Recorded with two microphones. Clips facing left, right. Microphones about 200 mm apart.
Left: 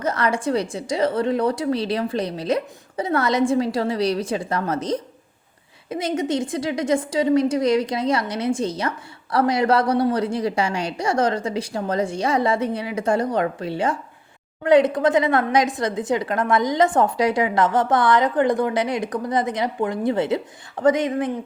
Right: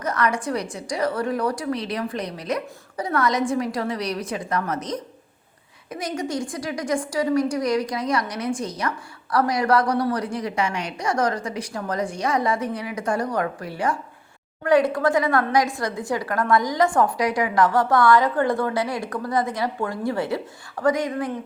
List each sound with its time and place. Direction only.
0.0 s a woman's voice: 25° left (ahead or behind)